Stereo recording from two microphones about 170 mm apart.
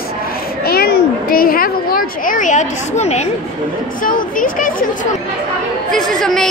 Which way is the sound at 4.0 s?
55° left (ahead or behind).